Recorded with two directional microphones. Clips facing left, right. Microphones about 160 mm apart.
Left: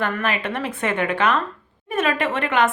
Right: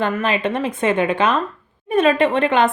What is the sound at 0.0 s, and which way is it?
A woman's voice, 20° right (ahead or behind).